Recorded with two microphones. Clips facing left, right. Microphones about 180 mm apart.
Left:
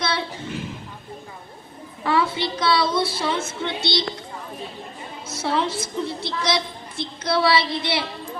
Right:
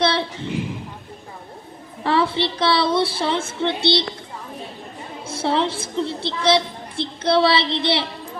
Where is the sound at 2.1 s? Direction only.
30° right (ahead or behind).